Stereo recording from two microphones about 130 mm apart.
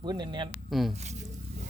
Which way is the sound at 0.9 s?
60° right (ahead or behind).